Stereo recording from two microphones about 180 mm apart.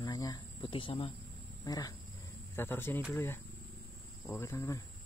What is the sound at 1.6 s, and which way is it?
Speech, 20° left (ahead or behind).